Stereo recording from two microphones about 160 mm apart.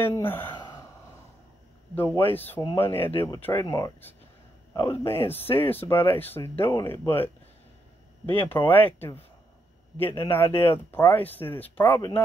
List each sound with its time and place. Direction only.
0.0 s speech: 15° left (ahead or behind)
2.3 s speech: 10° left (ahead or behind)
8.4 s speech: 10° left (ahead or behind)